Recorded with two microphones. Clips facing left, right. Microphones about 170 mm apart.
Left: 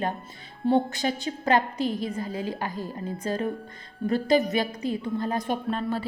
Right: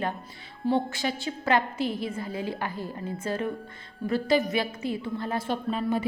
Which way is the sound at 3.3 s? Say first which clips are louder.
Left 2 dB; 40° left (ahead or behind).